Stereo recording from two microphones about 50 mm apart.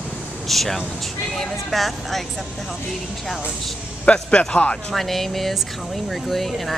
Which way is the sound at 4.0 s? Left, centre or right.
Left.